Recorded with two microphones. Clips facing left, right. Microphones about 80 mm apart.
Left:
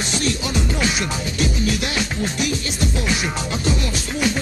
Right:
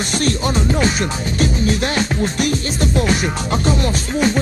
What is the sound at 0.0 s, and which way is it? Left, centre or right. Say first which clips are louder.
Music: right 4 dB; right.